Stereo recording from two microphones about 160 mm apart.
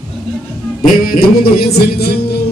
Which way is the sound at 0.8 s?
65° left (ahead or behind).